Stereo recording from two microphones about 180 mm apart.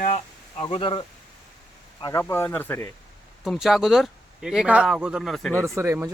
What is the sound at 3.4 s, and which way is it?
A man's voice, centre (ahead or behind).